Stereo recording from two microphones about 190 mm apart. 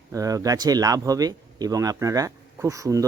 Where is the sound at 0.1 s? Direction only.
20° right (ahead or behind).